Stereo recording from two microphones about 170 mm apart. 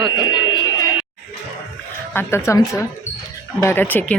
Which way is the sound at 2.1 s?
15° left (ahead or behind).